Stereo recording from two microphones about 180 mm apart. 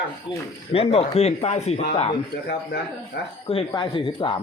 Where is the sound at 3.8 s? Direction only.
25° left (ahead or behind).